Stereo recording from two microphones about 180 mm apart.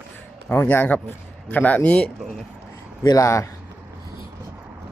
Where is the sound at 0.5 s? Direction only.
10° left (ahead or behind).